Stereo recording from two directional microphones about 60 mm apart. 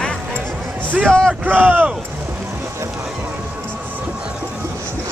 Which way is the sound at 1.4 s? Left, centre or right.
Right.